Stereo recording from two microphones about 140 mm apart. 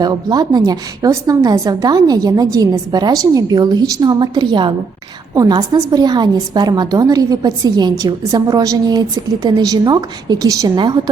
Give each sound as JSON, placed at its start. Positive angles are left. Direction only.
{"t": 0.0, "sound": "a woman's voice", "side_deg": -30}